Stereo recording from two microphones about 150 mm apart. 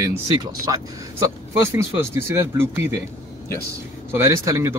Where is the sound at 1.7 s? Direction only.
15° right (ahead or behind).